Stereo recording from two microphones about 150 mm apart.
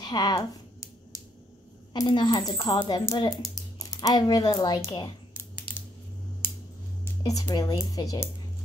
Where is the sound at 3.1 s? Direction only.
25° left (ahead or behind).